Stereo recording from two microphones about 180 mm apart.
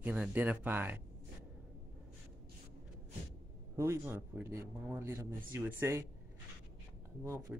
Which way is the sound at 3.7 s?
15° right (ahead or behind).